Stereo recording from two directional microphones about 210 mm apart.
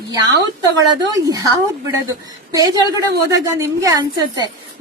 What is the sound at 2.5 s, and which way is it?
A woman's voice, 15° right (ahead or behind).